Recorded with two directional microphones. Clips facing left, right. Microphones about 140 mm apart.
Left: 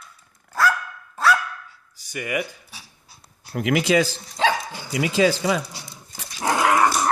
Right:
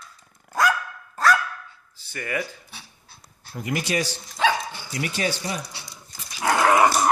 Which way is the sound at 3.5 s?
90° left.